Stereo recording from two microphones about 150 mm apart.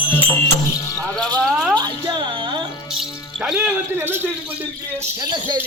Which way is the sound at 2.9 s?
5° right (ahead or behind).